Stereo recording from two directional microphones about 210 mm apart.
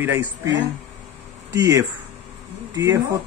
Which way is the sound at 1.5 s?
15° right (ahead or behind).